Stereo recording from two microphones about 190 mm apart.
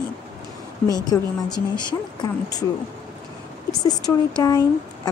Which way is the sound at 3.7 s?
20° left (ahead or behind).